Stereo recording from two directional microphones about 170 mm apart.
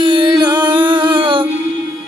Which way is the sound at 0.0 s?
25° right (ahead or behind).